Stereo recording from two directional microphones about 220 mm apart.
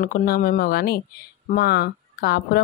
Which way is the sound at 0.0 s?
40° left (ahead or behind).